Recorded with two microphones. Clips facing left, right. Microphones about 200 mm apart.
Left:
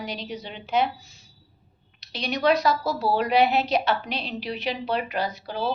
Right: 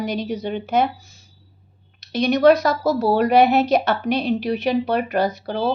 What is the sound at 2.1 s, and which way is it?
A woman's voice, 45° right (ahead or behind).